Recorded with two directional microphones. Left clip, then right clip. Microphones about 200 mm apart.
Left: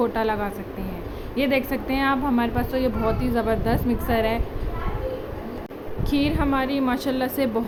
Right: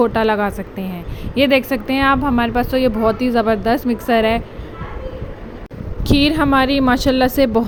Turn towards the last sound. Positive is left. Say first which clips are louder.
# right 9 dB
turn(degrees=-30)  # may be behind; listen again after turning